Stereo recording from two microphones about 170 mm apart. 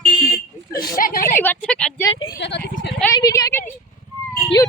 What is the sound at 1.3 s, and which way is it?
Speech, 10° left (ahead or behind).